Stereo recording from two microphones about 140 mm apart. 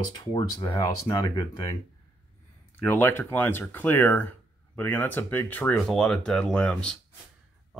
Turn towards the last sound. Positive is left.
turn(degrees=5)  # may be behind; listen again after turning